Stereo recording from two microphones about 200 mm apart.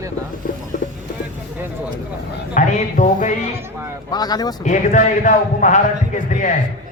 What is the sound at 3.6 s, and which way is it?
Speech, 10° right (ahead or behind).